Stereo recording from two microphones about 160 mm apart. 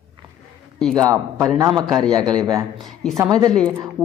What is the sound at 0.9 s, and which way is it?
A woman's voice, 20° right (ahead or behind).